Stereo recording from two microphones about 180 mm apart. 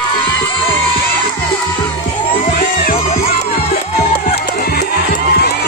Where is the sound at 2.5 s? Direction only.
55° left (ahead or behind).